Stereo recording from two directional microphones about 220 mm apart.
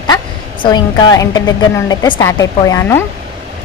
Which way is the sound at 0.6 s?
20° left (ahead or behind).